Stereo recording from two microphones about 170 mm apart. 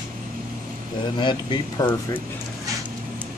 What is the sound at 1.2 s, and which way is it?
Speech, 25° left (ahead or behind).